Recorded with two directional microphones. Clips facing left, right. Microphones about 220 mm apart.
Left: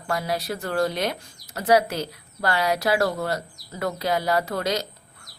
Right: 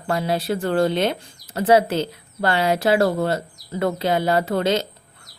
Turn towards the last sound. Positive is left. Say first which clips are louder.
# right 5 dB
turn(degrees=-25)  # may be behind; listen again after turning